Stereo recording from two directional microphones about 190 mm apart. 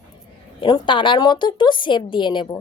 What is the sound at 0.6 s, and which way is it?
A woman's voice, 25° left (ahead or behind).